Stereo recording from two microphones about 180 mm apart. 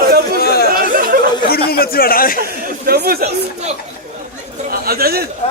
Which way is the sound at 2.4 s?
55° right (ahead or behind).